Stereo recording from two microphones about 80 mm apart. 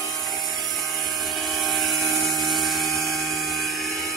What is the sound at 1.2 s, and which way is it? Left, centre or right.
Dental drill, centre.